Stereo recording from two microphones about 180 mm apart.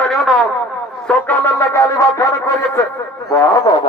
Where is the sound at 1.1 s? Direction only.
10° left (ahead or behind).